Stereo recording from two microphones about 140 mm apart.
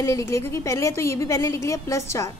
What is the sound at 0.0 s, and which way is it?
A woman's voice, 20° left (ahead or behind).